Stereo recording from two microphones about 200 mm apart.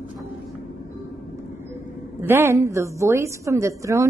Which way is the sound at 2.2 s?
10° right (ahead or behind).